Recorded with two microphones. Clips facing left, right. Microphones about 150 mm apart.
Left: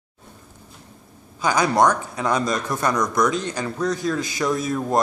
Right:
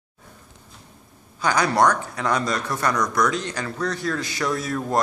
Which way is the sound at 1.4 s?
20° left (ahead or behind).